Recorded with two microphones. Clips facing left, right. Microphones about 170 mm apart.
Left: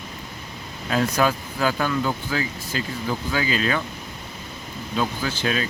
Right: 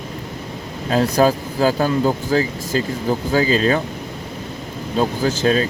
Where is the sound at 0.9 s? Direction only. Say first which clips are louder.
Right 6 dB; 35° right (ahead or behind).